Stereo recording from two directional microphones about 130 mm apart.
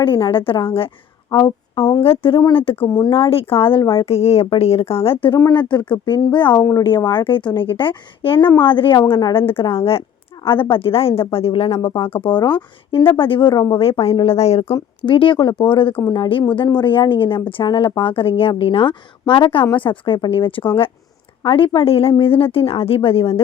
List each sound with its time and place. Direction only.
0.0 s speech: 40° left (ahead or behind)
6.6 s speech: 25° left (ahead or behind)
6.8 s speech: 40° left (ahead or behind)
13.7 s speech: 45° left (ahead or behind)
15.0 s speech: 40° left (ahead or behind)